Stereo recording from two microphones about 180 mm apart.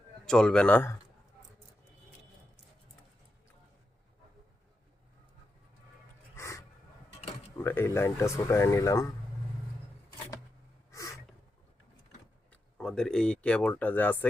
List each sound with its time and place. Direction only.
0.3 s speech: 5° left (ahead or behind)
6.3 s a sound: 15° left (ahead or behind)
7.6 s speech: 15° left (ahead or behind)
12.5 s speech: 5° left (ahead or behind)